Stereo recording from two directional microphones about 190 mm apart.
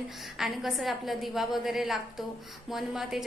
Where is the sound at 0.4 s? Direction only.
Centre (ahead or behind).